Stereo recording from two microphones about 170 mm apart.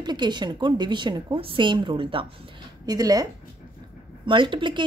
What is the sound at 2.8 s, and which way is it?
Speech, 20° right (ahead or behind).